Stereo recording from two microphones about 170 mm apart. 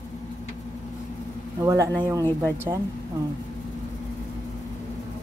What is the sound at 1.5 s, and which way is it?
Speech, 20° right (ahead or behind).